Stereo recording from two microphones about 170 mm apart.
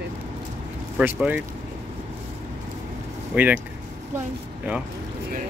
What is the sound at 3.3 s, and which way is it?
Speech, 10° right (ahead or behind).